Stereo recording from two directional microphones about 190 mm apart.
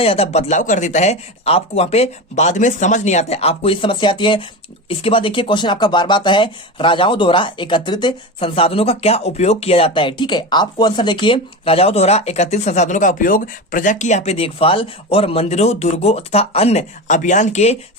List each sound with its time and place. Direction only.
0.0 s speech: 30° left (ahead or behind)